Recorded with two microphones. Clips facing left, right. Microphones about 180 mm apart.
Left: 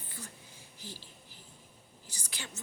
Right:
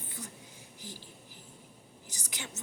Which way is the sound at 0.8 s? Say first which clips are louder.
Right 1 dB; 15° right (ahead or behind).